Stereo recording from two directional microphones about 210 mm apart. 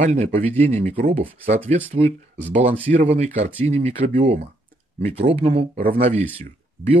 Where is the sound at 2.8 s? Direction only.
35° right (ahead or behind).